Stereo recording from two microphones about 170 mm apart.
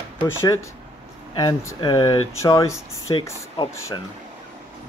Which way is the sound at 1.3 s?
20° left (ahead or behind).